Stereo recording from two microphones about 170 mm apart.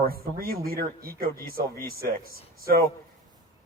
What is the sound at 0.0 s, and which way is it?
A man's voice, 60° right (ahead or behind).